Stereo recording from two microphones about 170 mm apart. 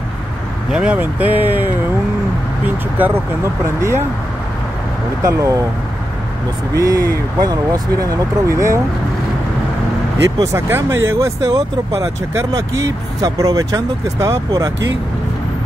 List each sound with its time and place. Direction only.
0.7 s speech: 5° right (ahead or behind)
3.0 s speech: 10° right (ahead or behind)
5.2 s speech: 20° right (ahead or behind)
6.7 s speech: 20° right (ahead or behind)
10.4 s speech: 15° right (ahead or behind)